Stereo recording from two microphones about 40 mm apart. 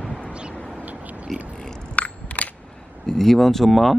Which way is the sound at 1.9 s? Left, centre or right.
Left.